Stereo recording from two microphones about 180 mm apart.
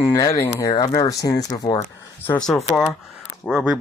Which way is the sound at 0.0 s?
15° left (ahead or behind).